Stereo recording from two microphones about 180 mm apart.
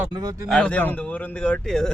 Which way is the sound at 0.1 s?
20° right (ahead or behind).